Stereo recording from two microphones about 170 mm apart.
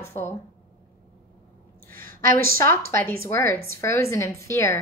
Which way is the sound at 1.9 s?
55° right (ahead or behind).